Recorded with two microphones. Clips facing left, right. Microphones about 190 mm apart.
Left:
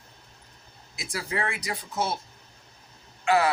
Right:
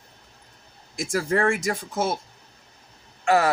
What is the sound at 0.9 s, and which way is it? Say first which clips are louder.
Speech: right 8 dB; 50° right (ahead or behind).